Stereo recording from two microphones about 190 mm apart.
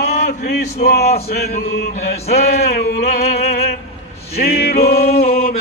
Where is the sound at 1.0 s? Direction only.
35° left (ahead or behind).